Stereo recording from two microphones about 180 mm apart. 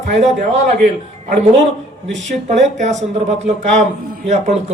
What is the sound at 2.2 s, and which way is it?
Speech, 40° right (ahead or behind).